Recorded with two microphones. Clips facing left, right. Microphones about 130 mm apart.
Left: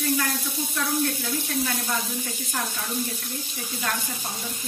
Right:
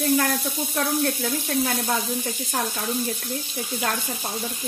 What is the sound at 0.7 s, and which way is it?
Speech, 50° right (ahead or behind).